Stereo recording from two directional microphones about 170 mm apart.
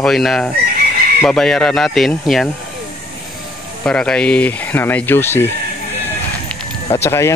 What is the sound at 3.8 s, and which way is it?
Speech, 5° left (ahead or behind).